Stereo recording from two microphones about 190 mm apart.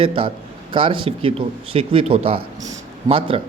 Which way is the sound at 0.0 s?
25° right (ahead or behind).